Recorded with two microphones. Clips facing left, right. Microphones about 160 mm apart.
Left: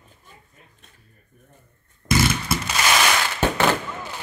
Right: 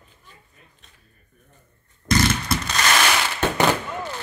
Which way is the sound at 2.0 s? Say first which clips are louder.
Even; 5° left (ahead or behind).